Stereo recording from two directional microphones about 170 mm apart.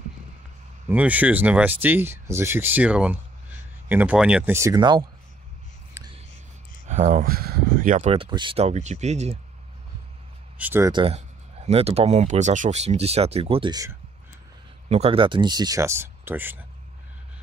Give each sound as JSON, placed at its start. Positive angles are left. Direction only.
{"t": 0.8, "sound": "speech", "side_deg": -10}
{"t": 6.0, "sound": "whispering", "side_deg": -15}
{"t": 6.9, "sound": "speech", "side_deg": -45}
{"t": 7.2, "sound": "speech", "side_deg": -65}
{"t": 8.1, "sound": "speech", "side_deg": -30}
{"t": 10.6, "sound": "speech", "side_deg": -10}
{"t": 10.9, "sound": "speech", "side_deg": -30}
{"t": 11.1, "sound": "speech", "side_deg": -40}
{"t": 14.9, "sound": "speech", "side_deg": -35}